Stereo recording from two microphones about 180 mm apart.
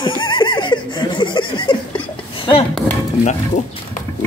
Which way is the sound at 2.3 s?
30° left (ahead or behind).